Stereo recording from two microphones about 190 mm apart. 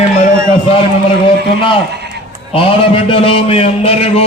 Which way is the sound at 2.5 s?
30° left (ahead or behind).